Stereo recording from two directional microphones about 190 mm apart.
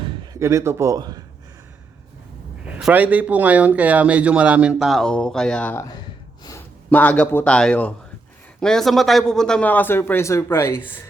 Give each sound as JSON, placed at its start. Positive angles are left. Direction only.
{"t": 0.0, "sound": "a sound", "side_deg": -25}
{"t": 0.3, "sound": "speech", "side_deg": -15}
{"t": 2.6, "sound": "speech", "side_deg": -5}
{"t": 6.9, "sound": "speech", "side_deg": 10}